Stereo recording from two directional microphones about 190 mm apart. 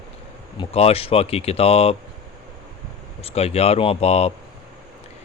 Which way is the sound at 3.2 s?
35° left (ahead or behind).